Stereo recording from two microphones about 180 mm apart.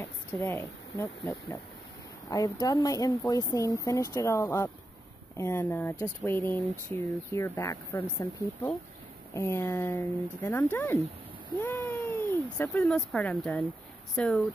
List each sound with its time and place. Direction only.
0.3 s speech: 15° left (ahead or behind)
9.3 s speech: 15° left (ahead or behind)